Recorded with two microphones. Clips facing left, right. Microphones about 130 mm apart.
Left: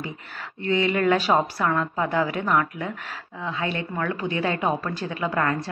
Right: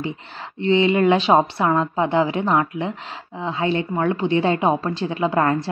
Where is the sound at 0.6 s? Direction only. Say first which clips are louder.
Right 6 dB; 25° right (ahead or behind).